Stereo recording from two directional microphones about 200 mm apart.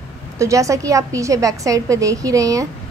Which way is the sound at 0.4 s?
15° right (ahead or behind).